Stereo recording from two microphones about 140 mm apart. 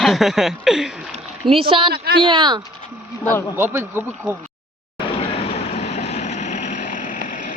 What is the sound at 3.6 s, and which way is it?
Speech, 15° right (ahead or behind).